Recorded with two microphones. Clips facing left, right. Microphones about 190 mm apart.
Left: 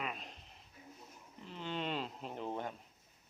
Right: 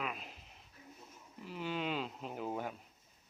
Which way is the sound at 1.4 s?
5° right (ahead or behind).